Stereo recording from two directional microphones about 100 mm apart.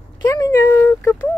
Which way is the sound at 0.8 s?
20° left (ahead or behind).